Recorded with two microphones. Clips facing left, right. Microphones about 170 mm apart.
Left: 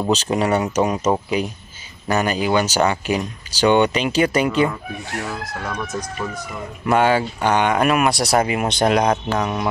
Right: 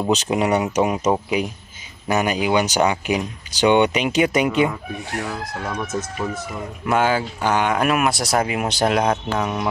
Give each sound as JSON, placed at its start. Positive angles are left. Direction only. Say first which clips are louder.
{"t": 0.1, "sound": "speech", "louder": "even", "side_deg": -15}